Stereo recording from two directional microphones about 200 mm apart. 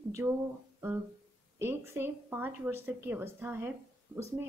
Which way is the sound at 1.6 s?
10° right (ahead or behind).